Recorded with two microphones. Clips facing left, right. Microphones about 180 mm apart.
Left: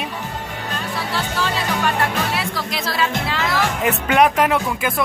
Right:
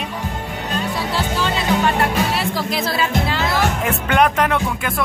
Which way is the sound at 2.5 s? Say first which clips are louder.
Right 3 dB; 25° right (ahead or behind).